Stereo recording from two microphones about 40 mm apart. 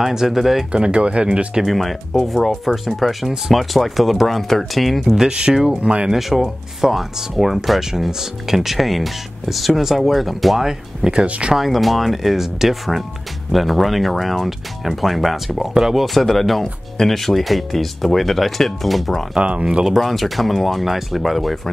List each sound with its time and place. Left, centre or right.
0.0 s speech: centre
0.7 s speech: right
1.7 s speech: centre
5.4 s speech: centre
5.8 s speech: right
6.1 s speech: centre
11.2 s speech: right
11.5 s speech: centre
19.3 s speech: right
19.9 s speech: centre